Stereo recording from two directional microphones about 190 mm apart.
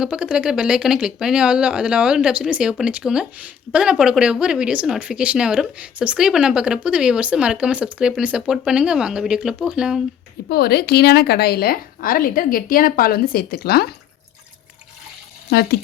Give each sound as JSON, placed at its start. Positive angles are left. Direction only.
{"t": 0.0, "sound": "speech", "side_deg": -5}
{"t": 10.5, "sound": "a woman's voice", "side_deg": 55}
{"t": 15.4, "sound": "speech", "side_deg": 55}